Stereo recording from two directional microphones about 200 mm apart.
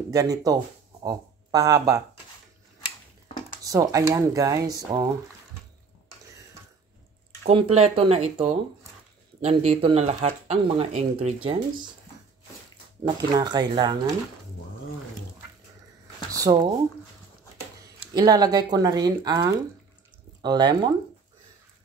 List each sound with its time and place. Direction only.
0.1 s speech: 15° right (ahead or behind)
3.6 s speech: 15° right (ahead or behind)
7.4 s speech: 30° right (ahead or behind)
13.0 s speech: 20° right (ahead or behind)
16.3 s speech: 15° right (ahead or behind)
18.1 s speech: 20° right (ahead or behind)